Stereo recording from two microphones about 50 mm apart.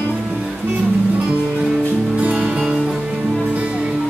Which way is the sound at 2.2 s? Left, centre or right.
Right.